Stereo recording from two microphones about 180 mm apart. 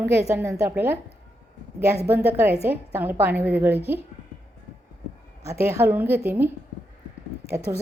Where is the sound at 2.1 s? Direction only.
10° right (ahead or behind).